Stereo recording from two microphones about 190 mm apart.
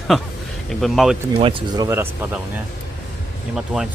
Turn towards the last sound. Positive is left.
turn(degrees=0)  # may be behind; listen again after turning